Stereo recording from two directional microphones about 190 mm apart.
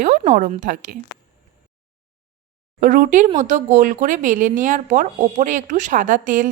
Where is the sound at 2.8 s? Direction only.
45° right (ahead or behind).